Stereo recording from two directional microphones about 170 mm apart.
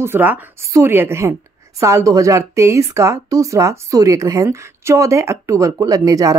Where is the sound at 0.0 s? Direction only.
10° right (ahead or behind).